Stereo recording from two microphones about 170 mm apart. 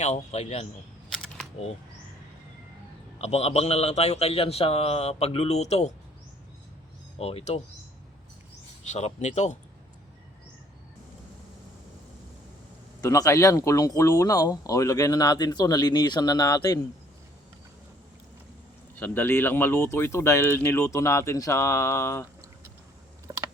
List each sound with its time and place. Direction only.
0.0 s a man's voice: 40° left (ahead or behind)
1.1 s camera: 5° left (ahead or behind)
3.2 s a man's voice: 40° left (ahead or behind)
7.2 s a man's voice: 35° left (ahead or behind)
8.8 s speech: 45° left (ahead or behind)
13.0 s speech: 20° left (ahead or behind)
18.9 s speech: 10° left (ahead or behind)
23.3 s computer keyboard: 15° right (ahead or behind)